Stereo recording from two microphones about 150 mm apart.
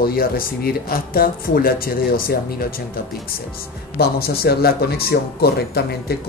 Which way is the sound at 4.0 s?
90° left.